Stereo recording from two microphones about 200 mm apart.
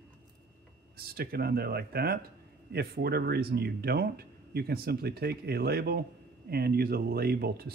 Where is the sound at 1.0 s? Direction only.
50° right (ahead or behind).